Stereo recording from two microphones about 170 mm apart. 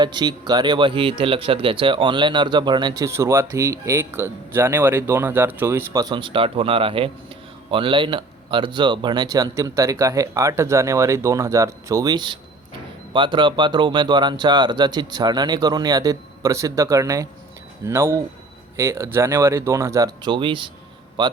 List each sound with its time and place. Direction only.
0.0 s speech: 25° right (ahead or behind)